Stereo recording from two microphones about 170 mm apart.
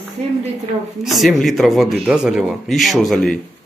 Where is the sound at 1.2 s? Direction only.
Centre (ahead or behind).